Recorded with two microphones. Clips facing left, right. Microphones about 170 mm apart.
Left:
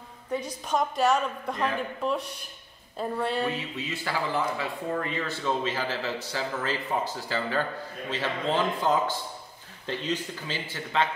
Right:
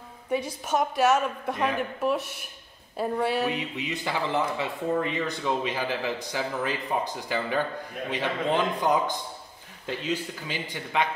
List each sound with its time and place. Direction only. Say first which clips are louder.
0.3 s a woman's voice: right 2 dB; 10° right (ahead or behind)
1.1 s a man's voice: right 2 dB; 15° right (ahead or behind)
3.4 s a man's voice: right 2 dB; 15° right (ahead or behind)